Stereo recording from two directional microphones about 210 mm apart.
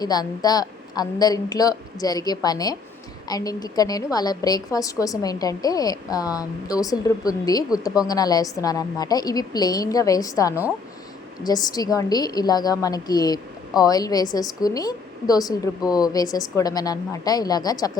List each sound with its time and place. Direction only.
0.0 s a woman's voice: 20° left (ahead or behind)